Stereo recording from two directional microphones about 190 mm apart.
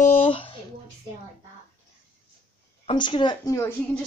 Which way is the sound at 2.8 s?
25° left (ahead or behind).